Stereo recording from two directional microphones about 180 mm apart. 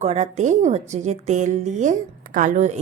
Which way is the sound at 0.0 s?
40° right (ahead or behind).